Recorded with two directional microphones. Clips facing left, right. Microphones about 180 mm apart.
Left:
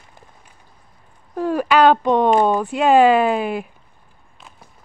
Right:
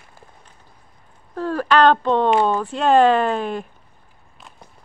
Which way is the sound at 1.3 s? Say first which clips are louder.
Left 1 dB; 15° left (ahead or behind).